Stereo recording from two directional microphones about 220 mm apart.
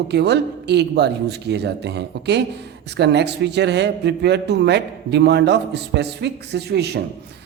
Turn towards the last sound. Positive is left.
turn(degrees=-50)  # may be behind; listen again after turning